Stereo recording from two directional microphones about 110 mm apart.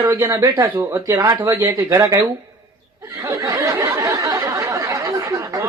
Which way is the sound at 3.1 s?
30° right (ahead or behind).